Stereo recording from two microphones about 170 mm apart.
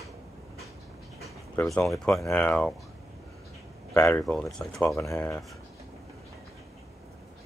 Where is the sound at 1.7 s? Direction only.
Centre (ahead or behind).